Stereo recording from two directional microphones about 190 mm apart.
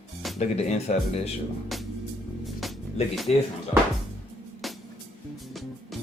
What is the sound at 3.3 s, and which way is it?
Speech, 35° left (ahead or behind).